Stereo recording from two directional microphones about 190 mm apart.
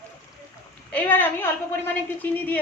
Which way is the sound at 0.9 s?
10° left (ahead or behind).